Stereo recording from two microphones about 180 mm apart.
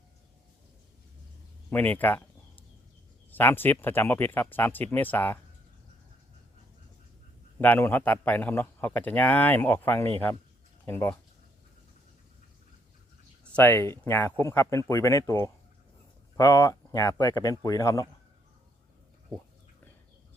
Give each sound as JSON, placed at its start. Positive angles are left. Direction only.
{"t": 1.7, "sound": "a sound", "side_deg": 10}
{"t": 3.3, "sound": "a man's voice", "side_deg": 10}
{"t": 7.6, "sound": "a man's voice", "side_deg": 10}
{"t": 13.4, "sound": "a man's voice", "side_deg": 10}